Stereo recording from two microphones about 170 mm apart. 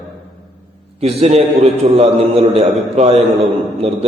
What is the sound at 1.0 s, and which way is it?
A man's voice, 35° right (ahead or behind).